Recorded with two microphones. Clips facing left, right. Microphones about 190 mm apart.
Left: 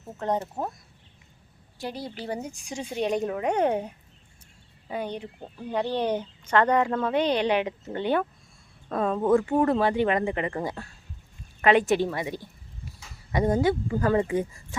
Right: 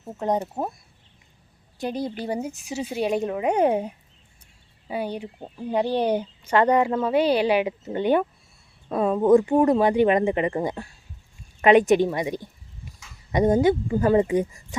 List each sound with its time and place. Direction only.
0.0 s speech: 15° right (ahead or behind)
1.8 s a woman's voice: 20° right (ahead or behind)